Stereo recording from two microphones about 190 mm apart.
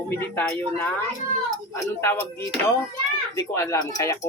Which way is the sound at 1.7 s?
15° left (ahead or behind).